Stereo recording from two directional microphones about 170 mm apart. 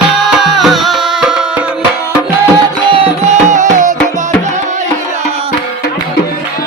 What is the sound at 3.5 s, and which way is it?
Music, 50° right (ahead or behind).